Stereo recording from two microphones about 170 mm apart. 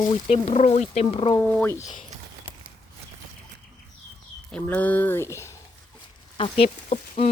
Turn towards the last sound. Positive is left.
turn(degrees=35)  # may be behind; listen again after turning